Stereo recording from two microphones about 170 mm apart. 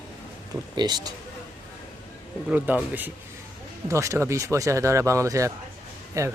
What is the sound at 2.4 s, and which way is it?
A man's voice, 10° right (ahead or behind).